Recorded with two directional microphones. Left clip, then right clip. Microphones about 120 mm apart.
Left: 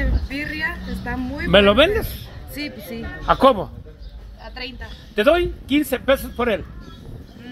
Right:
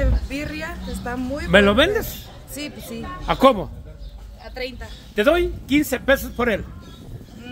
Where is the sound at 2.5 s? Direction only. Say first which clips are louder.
Left 2 dB; 85° right.